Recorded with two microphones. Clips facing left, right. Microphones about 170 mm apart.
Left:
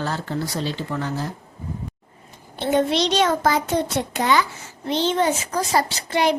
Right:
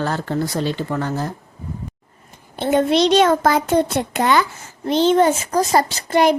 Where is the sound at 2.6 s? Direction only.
55° right (ahead or behind).